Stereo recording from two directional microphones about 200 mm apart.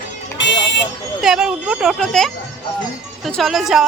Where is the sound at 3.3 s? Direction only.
Centre (ahead or behind).